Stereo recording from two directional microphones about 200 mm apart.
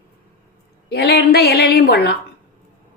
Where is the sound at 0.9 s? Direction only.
55° left (ahead or behind).